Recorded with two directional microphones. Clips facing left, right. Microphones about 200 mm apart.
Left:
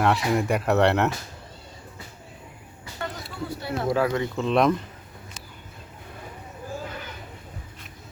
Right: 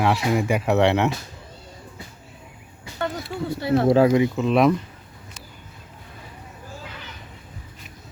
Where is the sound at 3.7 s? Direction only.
25° right (ahead or behind).